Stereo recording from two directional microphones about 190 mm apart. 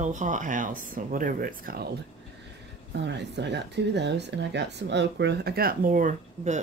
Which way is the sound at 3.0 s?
65° right (ahead or behind).